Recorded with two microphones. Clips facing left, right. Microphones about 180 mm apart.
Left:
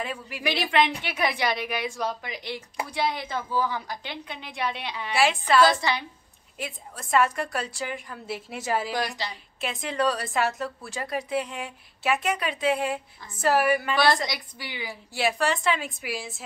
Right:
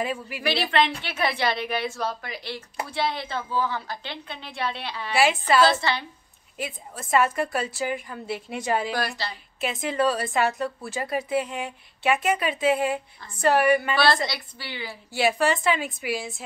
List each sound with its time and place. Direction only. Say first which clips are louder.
0.0 s a woman's voice: right 4 dB; 5° right (ahead or behind)
0.4 s a woman's voice: even; 15° left (ahead or behind)
5.1 s a woman's voice: right 2 dB; centre (ahead or behind)
5.7 s a woman's voice: right 1 dB; 15° left (ahead or behind)
6.6 s a woman's voice: right 3 dB; centre (ahead or behind)
8.9 s a woman's voice: right 1 dB; 15° left (ahead or behind)
9.3 s a woman's voice: right 3 dB; centre (ahead or behind)
13.9 s a woman's voice: right 1 dB; 15° left (ahead or behind)
15.1 s a woman's voice: right 3 dB; centre (ahead or behind)